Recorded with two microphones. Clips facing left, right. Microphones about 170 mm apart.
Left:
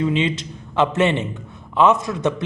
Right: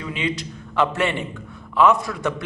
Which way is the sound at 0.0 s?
25° left (ahead or behind).